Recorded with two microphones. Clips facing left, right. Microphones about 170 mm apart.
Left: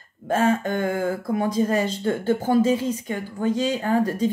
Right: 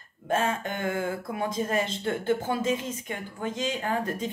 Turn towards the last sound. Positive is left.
turn(degrees=35)  # may be behind; listen again after turning